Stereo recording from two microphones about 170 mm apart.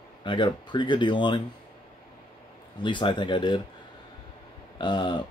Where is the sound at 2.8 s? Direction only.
30° left (ahead or behind).